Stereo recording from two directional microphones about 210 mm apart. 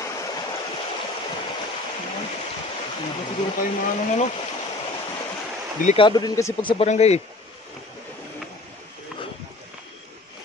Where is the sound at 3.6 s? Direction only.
35° left (ahead or behind).